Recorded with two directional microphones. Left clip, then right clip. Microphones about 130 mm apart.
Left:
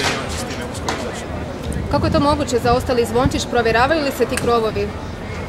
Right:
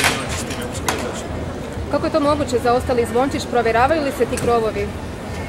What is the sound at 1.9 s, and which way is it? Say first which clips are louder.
Speech: left 1 dB; 35° left (ahead or behind).